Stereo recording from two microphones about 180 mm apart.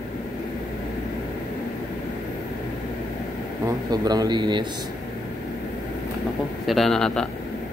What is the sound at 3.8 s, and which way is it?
Speech, 20° right (ahead or behind).